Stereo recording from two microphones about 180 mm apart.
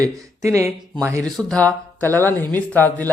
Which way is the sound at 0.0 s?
15° right (ahead or behind).